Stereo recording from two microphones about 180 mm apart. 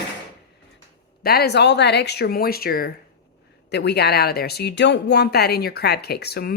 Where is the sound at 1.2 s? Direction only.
60° left (ahead or behind).